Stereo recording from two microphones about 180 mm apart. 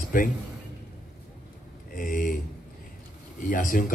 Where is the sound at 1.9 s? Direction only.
50° left (ahead or behind).